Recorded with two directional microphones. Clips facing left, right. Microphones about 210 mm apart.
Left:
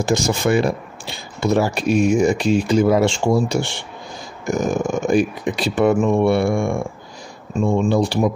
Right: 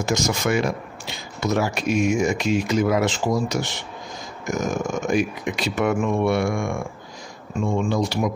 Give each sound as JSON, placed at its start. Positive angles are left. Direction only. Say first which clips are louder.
{"t": 0.0, "sound": "speech", "louder": "left 4 dB", "side_deg": 30}